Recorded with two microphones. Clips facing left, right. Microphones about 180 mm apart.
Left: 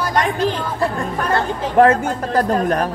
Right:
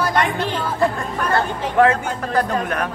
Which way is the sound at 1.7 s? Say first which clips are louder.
Left 3 dB; 40° left (ahead or behind).